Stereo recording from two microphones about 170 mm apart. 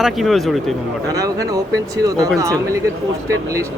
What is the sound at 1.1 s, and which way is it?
Speech, 20° right (ahead or behind).